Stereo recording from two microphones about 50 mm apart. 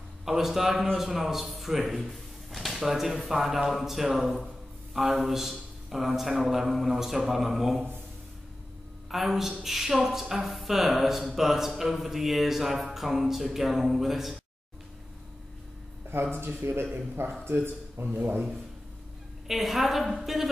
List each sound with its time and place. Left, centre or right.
0.2 s a man's voice: centre
9.1 s speech: centre
16.1 s speech: right
18.1 s speech: right
19.4 s speech: centre